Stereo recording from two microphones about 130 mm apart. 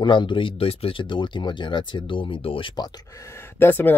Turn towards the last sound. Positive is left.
turn(degrees=15)  # may be behind; listen again after turning